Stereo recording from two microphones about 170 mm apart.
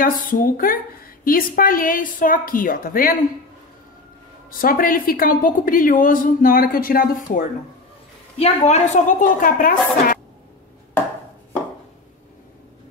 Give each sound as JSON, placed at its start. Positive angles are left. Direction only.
{"t": 0.0, "sound": "a woman's voice", "side_deg": 55}
{"t": 4.5, "sound": "a woman's voice", "side_deg": 55}
{"t": 8.4, "sound": "a woman's voice", "side_deg": 40}